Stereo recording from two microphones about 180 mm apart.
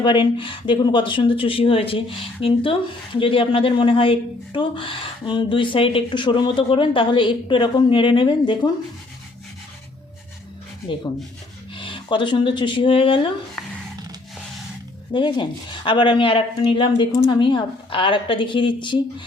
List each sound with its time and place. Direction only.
0.0 s speech: 25° left (ahead or behind)
11.7 s speech: 25° left (ahead or behind)
15.1 s speech: 25° left (ahead or behind)